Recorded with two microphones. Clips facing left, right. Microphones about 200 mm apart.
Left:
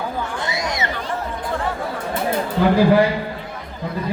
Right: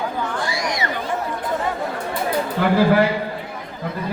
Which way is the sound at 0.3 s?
20° left (ahead or behind).